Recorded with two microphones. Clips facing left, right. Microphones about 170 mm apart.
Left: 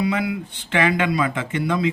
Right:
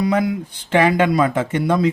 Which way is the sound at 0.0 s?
45° right (ahead or behind).